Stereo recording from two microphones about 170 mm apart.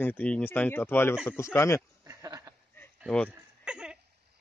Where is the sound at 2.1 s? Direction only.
20° right (ahead or behind).